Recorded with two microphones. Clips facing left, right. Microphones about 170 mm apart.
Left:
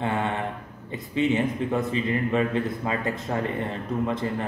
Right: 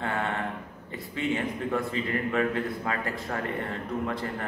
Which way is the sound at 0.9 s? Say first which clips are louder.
Left 6 dB; 20° left (ahead or behind).